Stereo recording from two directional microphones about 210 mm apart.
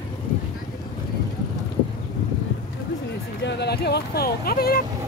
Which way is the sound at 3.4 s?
50° left (ahead or behind).